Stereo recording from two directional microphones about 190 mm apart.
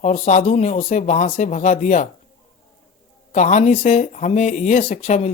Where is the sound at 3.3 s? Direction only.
40° left (ahead or behind).